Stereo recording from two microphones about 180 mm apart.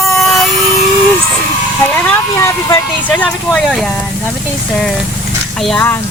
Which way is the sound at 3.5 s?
Centre (ahead or behind).